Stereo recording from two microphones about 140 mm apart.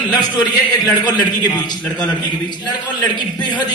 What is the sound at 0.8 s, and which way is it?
A man's voice, 30° left (ahead or behind).